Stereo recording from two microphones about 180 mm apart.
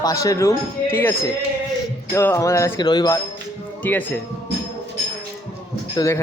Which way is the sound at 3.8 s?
10° left (ahead or behind).